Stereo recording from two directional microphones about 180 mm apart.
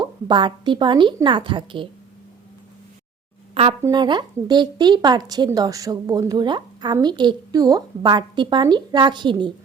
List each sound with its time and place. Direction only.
0.0 s speech: 25° right (ahead or behind)
3.5 s speech: 30° right (ahead or behind)